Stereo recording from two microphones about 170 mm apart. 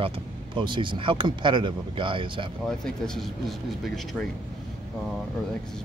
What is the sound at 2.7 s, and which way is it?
Speech, 5° left (ahead or behind).